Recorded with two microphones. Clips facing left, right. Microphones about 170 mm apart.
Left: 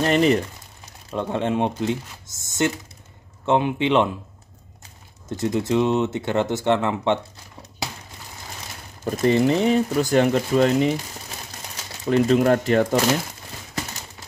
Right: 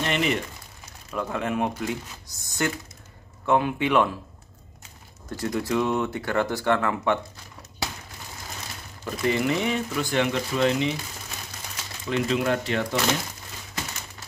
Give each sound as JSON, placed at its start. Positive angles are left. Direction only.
{"t": 0.0, "sound": "speech", "side_deg": 40}
{"t": 5.3, "sound": "speech", "side_deg": 20}
{"t": 9.0, "sound": "speech", "side_deg": 40}
{"t": 12.0, "sound": "speech", "side_deg": 40}